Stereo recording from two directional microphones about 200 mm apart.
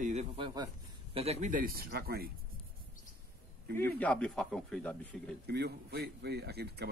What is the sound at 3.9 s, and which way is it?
Speech, 5° left (ahead or behind).